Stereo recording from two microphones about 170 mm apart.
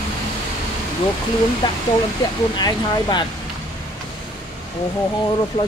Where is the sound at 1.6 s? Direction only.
25° left (ahead or behind).